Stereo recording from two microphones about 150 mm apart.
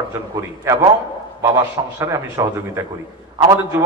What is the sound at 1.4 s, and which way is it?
A man's voice, 20° right (ahead or behind).